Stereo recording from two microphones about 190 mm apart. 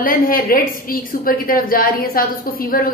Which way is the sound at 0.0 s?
50° left (ahead or behind).